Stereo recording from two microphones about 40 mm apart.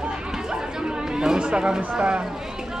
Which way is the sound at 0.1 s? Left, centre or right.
Centre.